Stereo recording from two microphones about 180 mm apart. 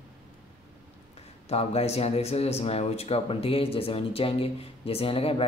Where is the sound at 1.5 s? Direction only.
35° left (ahead or behind).